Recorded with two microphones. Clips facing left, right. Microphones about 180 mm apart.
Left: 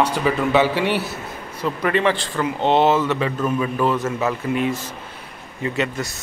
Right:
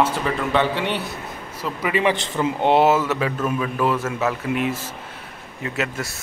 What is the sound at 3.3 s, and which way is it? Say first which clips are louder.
Speech: left 2 dB; 10° left (ahead or behind).